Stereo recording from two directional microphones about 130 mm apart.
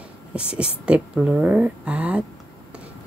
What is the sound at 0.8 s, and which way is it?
Speech, 10° right (ahead or behind).